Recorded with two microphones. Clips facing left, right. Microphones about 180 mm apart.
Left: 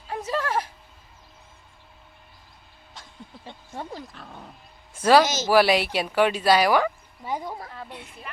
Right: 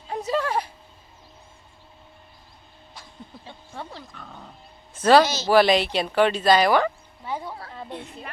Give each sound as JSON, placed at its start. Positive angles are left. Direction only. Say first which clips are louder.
{"t": 0.1, "sound": "a sound", "louder": "right 2 dB", "side_deg": -15}
{"t": 4.1, "sound": "speech", "louder": "even", "side_deg": 5}
{"t": 7.7, "sound": "a woman's voice", "louder": "right 2 dB", "side_deg": -15}